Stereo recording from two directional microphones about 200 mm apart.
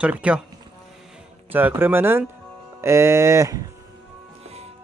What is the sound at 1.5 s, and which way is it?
Speech, 10° right (ahead or behind).